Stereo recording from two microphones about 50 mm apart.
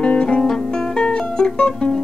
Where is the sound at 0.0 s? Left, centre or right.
Left.